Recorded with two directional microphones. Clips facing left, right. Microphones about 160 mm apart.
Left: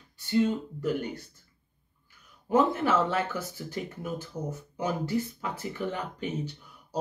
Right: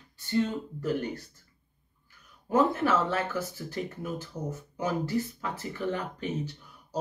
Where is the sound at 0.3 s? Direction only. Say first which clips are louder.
Left 3 dB; 15° left (ahead or behind).